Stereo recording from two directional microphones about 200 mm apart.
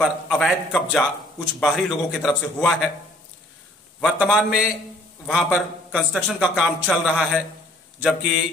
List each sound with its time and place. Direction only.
0.0 s a man's voice: centre (ahead or behind)
4.0 s a man's voice: centre (ahead or behind)